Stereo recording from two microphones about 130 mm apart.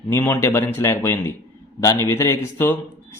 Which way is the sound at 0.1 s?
20° left (ahead or behind).